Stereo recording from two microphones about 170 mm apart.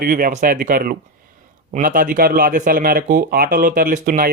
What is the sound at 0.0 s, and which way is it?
Speech, 60° right (ahead or behind).